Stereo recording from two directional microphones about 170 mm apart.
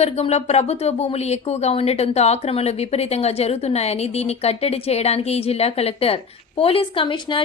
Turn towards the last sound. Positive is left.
turn(degrees=30)  # may be behind; listen again after turning